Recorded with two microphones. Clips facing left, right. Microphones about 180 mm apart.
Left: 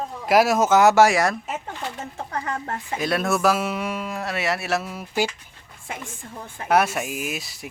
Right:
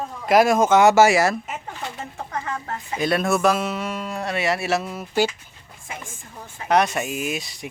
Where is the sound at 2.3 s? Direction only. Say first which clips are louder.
Left 1 dB; 40° left (ahead or behind).